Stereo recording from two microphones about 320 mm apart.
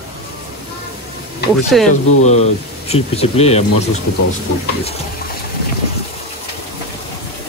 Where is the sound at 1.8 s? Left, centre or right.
Left.